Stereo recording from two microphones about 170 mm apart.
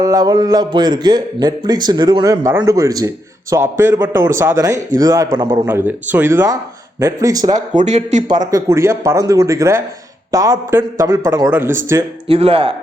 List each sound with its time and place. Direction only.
0.0 s a man's voice: 20° right (ahead or behind)
5.6 s a man's voice: 10° right (ahead or behind)
7.5 s speech: 45° right (ahead or behind)
8.3 s a man's voice: 20° right (ahead or behind)
12.3 s speech: 35° right (ahead or behind)